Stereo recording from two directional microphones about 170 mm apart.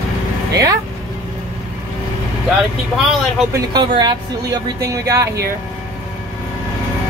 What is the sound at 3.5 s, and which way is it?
Speech, 25° right (ahead or behind).